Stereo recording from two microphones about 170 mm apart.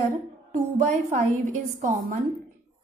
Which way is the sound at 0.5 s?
45° right (ahead or behind).